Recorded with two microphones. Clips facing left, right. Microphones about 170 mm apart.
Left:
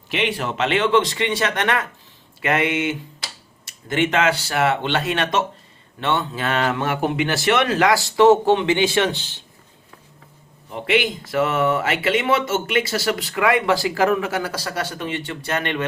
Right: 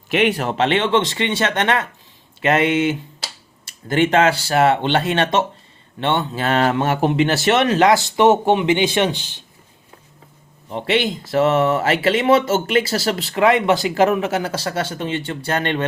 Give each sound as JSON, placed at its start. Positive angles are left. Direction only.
{"t": 0.1, "sound": "speech", "side_deg": -45}
{"t": 10.7, "sound": "speech", "side_deg": -30}